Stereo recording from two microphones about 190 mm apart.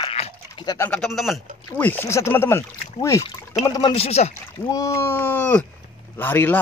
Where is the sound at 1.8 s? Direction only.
10° left (ahead or behind).